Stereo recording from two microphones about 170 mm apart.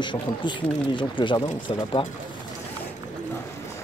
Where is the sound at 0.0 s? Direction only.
30° left (ahead or behind).